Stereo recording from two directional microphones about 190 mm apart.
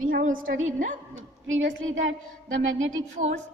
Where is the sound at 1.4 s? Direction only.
85° right.